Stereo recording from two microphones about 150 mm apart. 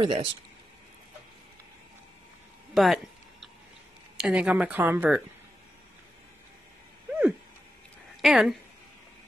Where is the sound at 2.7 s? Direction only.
Centre (ahead or behind).